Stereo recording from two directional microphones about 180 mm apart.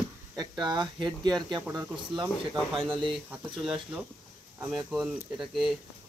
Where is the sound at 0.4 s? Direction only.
25° right (ahead or behind).